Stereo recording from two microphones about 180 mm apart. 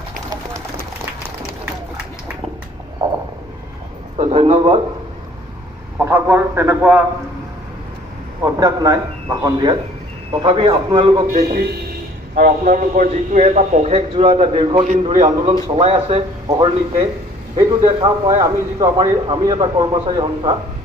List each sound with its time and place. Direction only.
4.2 s a man's voice: 35° right (ahead or behind)
5.9 s a man's voice: 10° right (ahead or behind)
8.5 s a man's voice: 20° right (ahead or behind)
12.4 s a man's voice: 50° right (ahead or behind); by 20.5 s 25° right (ahead or behind)